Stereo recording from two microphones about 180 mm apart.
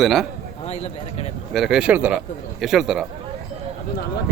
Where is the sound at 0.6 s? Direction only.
35° left (ahead or behind).